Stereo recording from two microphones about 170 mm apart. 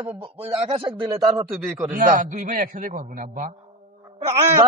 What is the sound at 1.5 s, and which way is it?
Speech, centre (ahead or behind).